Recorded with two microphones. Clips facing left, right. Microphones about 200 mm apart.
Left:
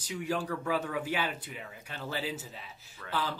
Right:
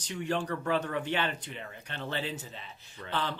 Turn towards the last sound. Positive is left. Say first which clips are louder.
# right 1 dB
turn(degrees=5)  # may be behind; listen again after turning